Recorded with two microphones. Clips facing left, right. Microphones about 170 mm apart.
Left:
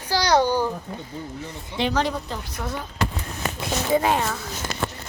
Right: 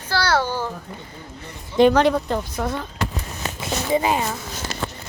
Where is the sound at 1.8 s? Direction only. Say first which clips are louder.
Right 9 dB; 55° right (ahead or behind).